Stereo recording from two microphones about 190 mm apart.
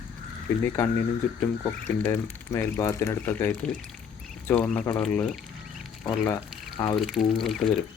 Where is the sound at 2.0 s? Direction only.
10° left (ahead or behind).